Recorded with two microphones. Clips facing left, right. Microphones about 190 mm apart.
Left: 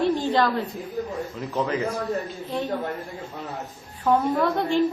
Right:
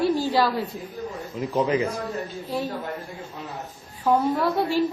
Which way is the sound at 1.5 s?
10° right (ahead or behind).